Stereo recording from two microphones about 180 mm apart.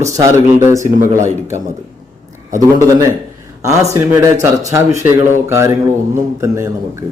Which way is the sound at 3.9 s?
15° right (ahead or behind).